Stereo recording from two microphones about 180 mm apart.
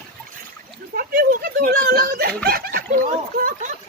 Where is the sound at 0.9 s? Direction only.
55° right (ahead or behind).